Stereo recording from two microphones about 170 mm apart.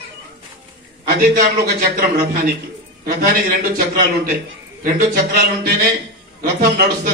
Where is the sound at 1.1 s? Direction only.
65° right (ahead or behind).